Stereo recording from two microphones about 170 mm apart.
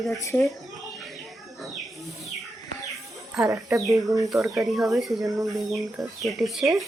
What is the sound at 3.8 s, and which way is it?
Speech, centre (ahead or behind).